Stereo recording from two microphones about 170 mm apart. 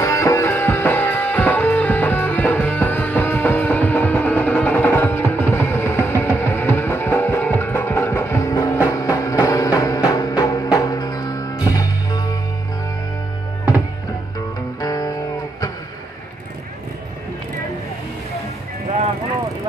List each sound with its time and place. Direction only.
0.0 s music: 20° left (ahead or behind)
14.8 s music: 20° left (ahead or behind)